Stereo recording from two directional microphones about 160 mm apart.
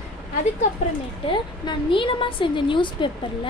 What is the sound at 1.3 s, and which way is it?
A woman's voice, 30° left (ahead or behind).